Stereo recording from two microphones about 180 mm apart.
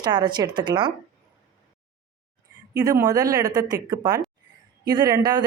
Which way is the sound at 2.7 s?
20° right (ahead or behind).